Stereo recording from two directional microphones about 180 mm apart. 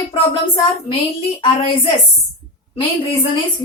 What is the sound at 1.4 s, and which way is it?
A woman's voice, 30° left (ahead or behind).